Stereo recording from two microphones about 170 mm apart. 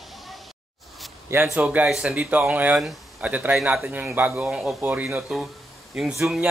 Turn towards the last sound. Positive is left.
turn(degrees=0)  # may be behind; listen again after turning